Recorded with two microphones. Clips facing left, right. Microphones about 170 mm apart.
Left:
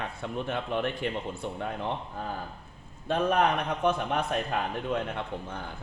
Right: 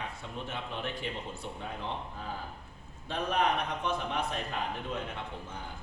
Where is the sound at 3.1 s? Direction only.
55° left (ahead or behind).